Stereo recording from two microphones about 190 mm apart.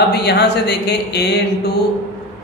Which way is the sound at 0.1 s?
60° left (ahead or behind).